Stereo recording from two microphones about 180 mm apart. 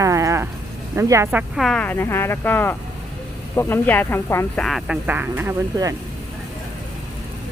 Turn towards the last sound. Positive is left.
turn(degrees=-15)  # may be behind; listen again after turning